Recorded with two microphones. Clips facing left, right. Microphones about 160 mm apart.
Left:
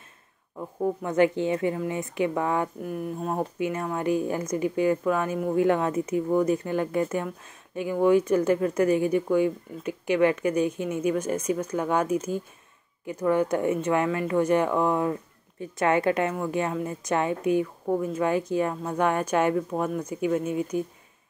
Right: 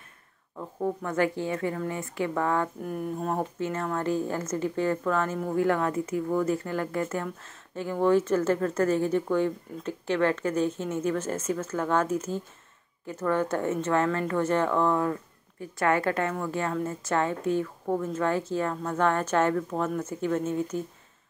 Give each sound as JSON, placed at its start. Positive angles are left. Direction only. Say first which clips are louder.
{"t": 1.0, "sound": "speech", "louder": "left 6 dB", "side_deg": 20}
{"t": 2.8, "sound": "speech", "louder": "even", "side_deg": 5}